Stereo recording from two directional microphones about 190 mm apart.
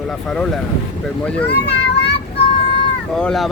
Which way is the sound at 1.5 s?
60° left (ahead or behind).